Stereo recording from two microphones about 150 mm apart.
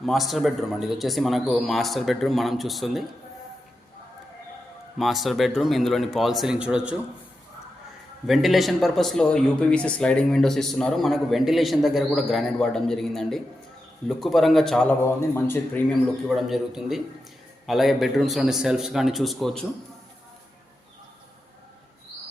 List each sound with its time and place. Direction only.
0.0 s speech: centre (ahead or behind)
4.9 s speech: centre (ahead or behind)
8.3 s speech: centre (ahead or behind)
15.0 s a man's voice: 15° left (ahead or behind)
16.3 s speech: centre (ahead or behind)